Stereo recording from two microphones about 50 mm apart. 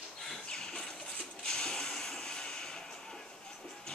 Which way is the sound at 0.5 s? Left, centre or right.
Centre.